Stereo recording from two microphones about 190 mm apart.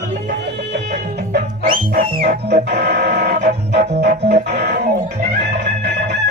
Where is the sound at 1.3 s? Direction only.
50° right (ahead or behind).